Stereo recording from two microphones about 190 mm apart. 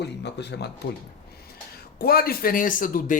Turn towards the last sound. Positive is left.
turn(degrees=45)  # may be behind; listen again after turning